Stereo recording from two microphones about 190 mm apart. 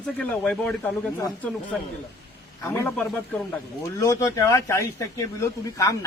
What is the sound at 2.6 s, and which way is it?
A man's voice, 10° left (ahead or behind).